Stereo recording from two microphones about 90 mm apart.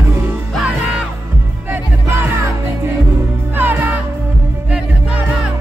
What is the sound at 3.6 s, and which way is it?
Music, 25° right (ahead or behind).